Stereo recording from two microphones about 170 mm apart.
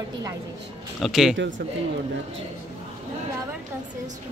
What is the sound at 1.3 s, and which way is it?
Speech, 90° right.